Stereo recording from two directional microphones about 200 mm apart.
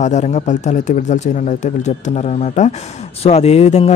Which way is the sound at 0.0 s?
35° left (ahead or behind).